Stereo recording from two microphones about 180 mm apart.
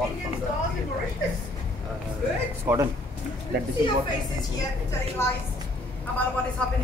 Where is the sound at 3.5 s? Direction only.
65° right (ahead or behind).